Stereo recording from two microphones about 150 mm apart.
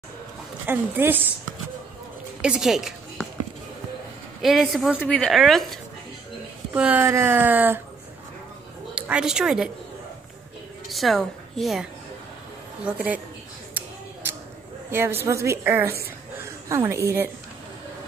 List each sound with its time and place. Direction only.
0.7 s a woman's voice: 15° right (ahead or behind)
2.4 s speech: 5° right (ahead or behind)
4.4 s speech: centre (ahead or behind)
6.7 s a woman's voice: 10° right (ahead or behind)
8.9 s a woman's voice: 10° right (ahead or behind)
10.9 s a woman's voice: centre (ahead or behind)
14.9 s a woman's voice: 15° right (ahead or behind)